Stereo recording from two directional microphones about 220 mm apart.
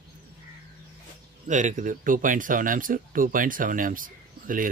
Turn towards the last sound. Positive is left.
turn(degrees=-40)  # may be behind; listen again after turning